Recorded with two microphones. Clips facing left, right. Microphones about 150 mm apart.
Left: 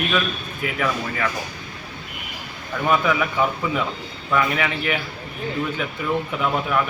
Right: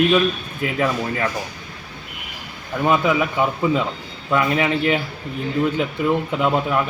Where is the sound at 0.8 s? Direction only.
25° right (ahead or behind).